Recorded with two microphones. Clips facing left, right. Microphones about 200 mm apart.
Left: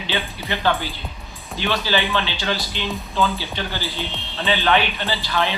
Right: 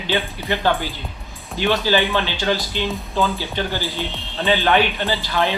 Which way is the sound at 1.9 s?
45° right (ahead or behind).